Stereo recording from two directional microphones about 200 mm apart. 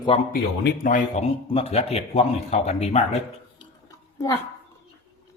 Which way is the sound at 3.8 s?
15° left (ahead or behind).